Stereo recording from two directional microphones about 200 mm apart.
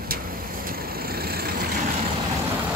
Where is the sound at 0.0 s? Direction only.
45° right (ahead or behind).